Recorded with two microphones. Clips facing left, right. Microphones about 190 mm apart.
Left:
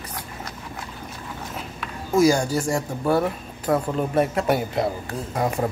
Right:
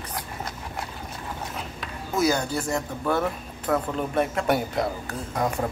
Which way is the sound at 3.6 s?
25° left (ahead or behind).